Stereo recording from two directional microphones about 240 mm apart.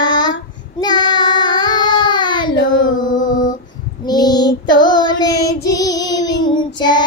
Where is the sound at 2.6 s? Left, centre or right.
Left.